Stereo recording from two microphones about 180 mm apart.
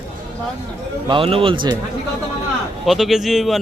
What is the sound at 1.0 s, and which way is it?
Speech, 30° right (ahead or behind).